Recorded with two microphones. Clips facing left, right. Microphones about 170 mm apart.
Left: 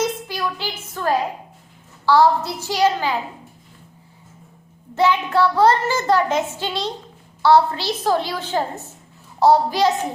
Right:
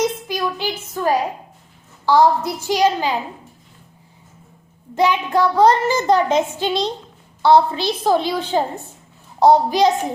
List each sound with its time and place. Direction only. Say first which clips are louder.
0.0 s a sound: right 2 dB; 15° right (ahead or behind)
2.0 s a child's voice: right 1 dB; 15° right (ahead or behind)
4.9 s a child's voice: right 1 dB; 15° right (ahead or behind)